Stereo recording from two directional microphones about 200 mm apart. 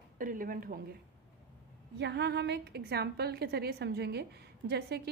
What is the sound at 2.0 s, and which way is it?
A woman's voice, 55° right (ahead or behind).